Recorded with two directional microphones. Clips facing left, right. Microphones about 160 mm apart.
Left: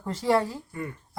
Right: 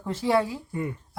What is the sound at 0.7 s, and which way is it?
Speech, 20° right (ahead or behind).